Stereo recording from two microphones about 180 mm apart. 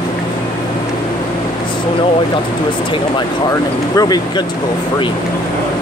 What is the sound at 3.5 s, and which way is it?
Speech, 20° left (ahead or behind).